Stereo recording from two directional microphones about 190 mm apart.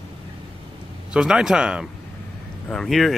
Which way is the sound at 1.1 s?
5° right (ahead or behind).